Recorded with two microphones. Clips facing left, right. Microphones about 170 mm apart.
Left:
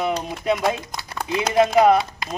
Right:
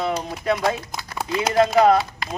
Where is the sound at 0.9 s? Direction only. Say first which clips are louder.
Right 1 dB; 5° right (ahead or behind).